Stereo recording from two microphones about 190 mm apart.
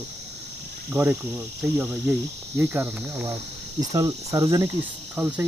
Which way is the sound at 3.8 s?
20° right (ahead or behind).